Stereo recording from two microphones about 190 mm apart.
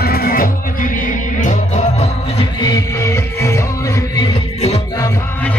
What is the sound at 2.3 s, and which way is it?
Music, 20° left (ahead or behind).